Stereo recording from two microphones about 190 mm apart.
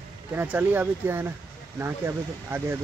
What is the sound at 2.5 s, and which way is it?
Speech, 10° right (ahead or behind).